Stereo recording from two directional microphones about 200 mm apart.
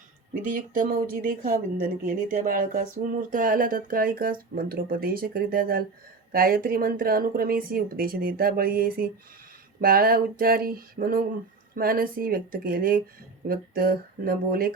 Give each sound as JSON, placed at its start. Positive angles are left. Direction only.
{"t": 0.4, "sound": "a woman's voice", "side_deg": -45}